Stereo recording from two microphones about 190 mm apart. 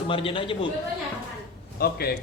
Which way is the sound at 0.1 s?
30° left (ahead or behind).